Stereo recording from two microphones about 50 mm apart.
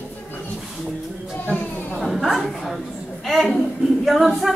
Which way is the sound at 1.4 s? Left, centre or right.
Left.